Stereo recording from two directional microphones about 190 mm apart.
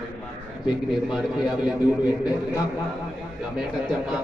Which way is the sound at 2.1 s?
20° left (ahead or behind).